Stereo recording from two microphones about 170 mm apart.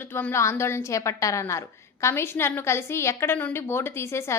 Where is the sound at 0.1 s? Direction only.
10° left (ahead or behind).